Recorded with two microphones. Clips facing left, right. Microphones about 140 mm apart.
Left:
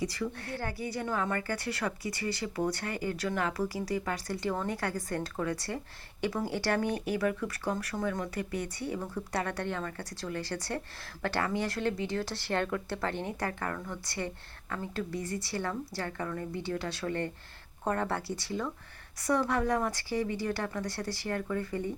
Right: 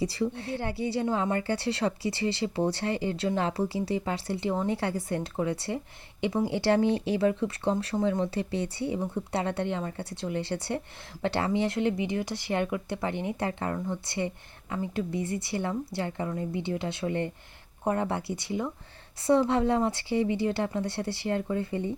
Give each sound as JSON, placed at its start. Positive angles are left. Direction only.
{"t": 0.0, "sound": "a woman's voice", "side_deg": -30}